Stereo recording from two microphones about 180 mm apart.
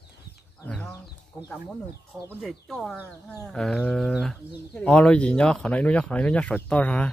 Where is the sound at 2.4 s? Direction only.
5° left (ahead or behind).